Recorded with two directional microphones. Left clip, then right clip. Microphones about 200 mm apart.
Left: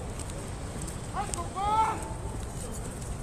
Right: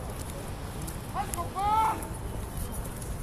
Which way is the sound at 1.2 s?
55° right (ahead or behind).